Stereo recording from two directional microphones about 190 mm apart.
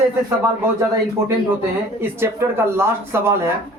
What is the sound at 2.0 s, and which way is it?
Speech, 10° right (ahead or behind).